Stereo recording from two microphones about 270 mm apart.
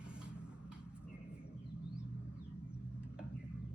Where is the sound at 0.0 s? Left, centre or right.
Centre.